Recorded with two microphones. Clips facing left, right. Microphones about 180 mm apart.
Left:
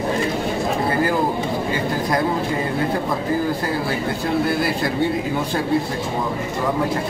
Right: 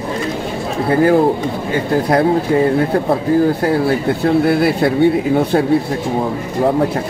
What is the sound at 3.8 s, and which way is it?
Speech, 60° right (ahead or behind).